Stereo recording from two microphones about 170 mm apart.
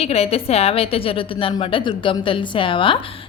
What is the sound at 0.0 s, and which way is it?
A woman's voice, 35° left (ahead or behind).